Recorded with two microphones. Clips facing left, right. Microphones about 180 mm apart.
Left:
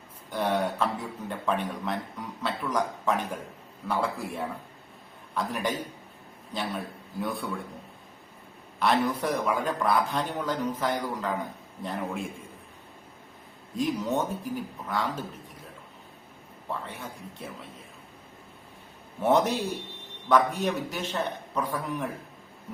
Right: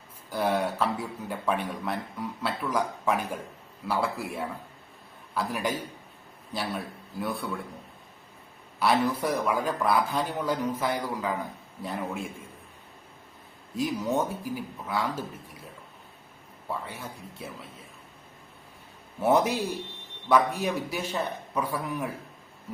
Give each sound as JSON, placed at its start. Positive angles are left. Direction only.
{"t": 0.3, "sound": "a man's voice", "side_deg": -5}
{"t": 8.8, "sound": "a man's voice", "side_deg": -5}
{"t": 13.7, "sound": "a man's voice", "side_deg": -5}
{"t": 16.6, "sound": "a man's voice", "side_deg": -5}
{"t": 19.2, "sound": "a man's voice", "side_deg": -10}